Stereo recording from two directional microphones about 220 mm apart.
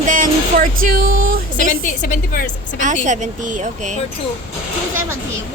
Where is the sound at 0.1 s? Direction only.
35° right (ahead or behind).